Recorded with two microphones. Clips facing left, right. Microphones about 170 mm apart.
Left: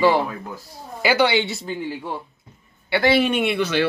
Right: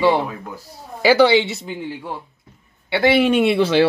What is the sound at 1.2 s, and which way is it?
A man's voice, 25° right (ahead or behind).